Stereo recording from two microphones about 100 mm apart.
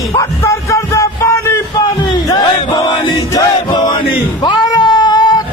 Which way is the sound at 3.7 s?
50° left (ahead or behind).